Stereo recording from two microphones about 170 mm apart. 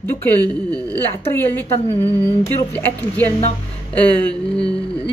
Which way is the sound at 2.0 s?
15° left (ahead or behind).